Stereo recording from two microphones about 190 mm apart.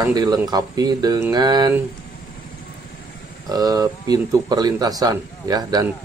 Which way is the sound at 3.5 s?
20° right (ahead or behind).